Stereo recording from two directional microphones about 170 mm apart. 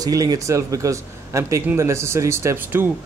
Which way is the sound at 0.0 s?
20° right (ahead or behind).